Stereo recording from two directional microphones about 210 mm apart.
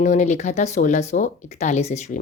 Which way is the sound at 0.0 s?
35° left (ahead or behind).